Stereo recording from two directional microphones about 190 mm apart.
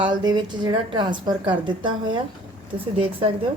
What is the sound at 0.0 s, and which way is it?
Speech, 25° right (ahead or behind).